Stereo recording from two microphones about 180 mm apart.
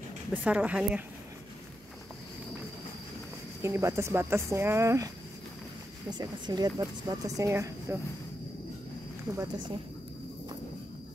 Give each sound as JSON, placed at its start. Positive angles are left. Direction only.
{"t": 0.3, "sound": "speech", "side_deg": -10}
{"t": 3.6, "sound": "speech", "side_deg": -15}
{"t": 9.3, "sound": "speech", "side_deg": -20}